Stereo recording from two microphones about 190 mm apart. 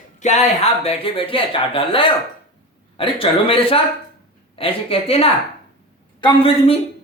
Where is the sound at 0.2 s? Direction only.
35° left (ahead or behind).